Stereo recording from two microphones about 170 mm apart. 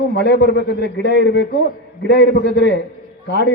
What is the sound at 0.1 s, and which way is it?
A man's voice, 80° left.